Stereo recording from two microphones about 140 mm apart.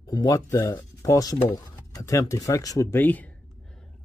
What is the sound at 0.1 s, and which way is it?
Speech, 25° left (ahead or behind).